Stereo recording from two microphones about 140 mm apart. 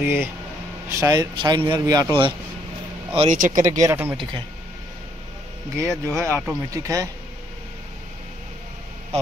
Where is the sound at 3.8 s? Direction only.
15° right (ahead or behind).